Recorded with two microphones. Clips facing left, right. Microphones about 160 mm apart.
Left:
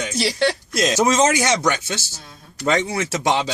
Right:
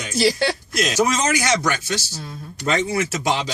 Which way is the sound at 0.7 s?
25° left (ahead or behind).